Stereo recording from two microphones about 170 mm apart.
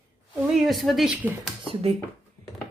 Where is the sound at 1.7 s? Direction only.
35° right (ahead or behind).